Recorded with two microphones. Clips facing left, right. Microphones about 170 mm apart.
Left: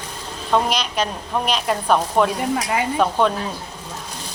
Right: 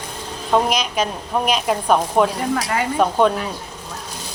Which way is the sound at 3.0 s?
5° right (ahead or behind).